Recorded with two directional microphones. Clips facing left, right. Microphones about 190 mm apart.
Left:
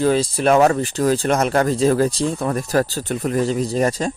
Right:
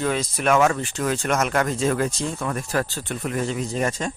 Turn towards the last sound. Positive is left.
turn(degrees=35)  # may be behind; listen again after turning